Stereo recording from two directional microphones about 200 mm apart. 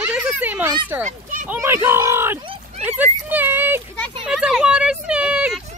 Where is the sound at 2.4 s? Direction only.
25° right (ahead or behind).